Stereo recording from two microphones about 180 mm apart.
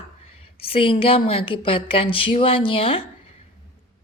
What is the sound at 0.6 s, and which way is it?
Speech, 30° left (ahead or behind).